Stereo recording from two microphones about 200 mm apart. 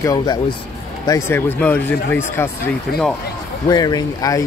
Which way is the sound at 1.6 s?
5° left (ahead or behind).